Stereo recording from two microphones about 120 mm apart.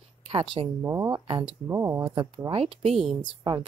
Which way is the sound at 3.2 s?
40° right (ahead or behind).